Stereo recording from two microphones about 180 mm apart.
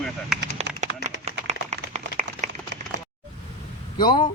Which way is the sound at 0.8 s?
40° right (ahead or behind).